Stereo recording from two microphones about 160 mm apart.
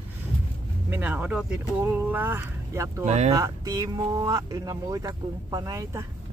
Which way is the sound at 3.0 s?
45° right (ahead or behind).